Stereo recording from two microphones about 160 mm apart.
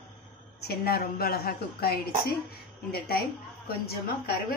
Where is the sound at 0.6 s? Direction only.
75° left (ahead or behind).